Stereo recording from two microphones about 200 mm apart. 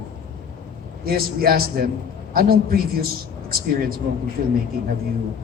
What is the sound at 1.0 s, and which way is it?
Speech, 50° right (ahead or behind).